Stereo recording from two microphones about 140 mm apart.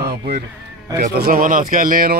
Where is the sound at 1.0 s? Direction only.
80° right.